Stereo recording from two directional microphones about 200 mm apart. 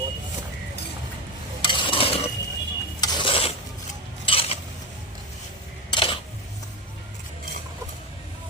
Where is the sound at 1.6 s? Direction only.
25° left (ahead or behind).